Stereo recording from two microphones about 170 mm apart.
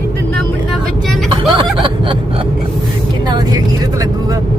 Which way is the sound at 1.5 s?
30° right (ahead or behind).